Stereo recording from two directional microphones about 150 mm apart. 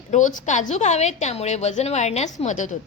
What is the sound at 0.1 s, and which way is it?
A woman's voice, 55° left (ahead or behind).